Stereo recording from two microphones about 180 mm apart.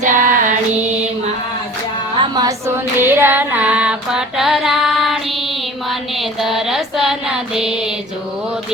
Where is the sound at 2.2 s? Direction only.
20° right (ahead or behind); by 5.4 s centre (ahead or behind).